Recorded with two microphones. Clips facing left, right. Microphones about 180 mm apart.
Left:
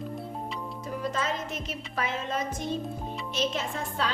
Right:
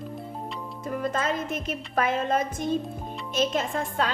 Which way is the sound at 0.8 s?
55° right (ahead or behind).